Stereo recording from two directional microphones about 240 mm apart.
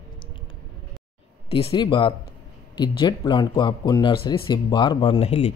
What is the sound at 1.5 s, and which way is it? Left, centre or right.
Speech, left.